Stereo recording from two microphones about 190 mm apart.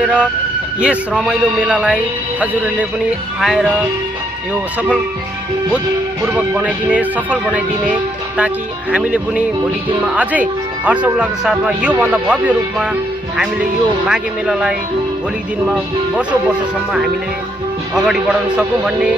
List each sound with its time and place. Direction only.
0.0 s vehicle: 5° right (ahead or behind)
0.7 s speech: 5° right (ahead or behind)
3.3 s speech: centre (ahead or behind)
6.3 s speech: 5° right (ahead or behind)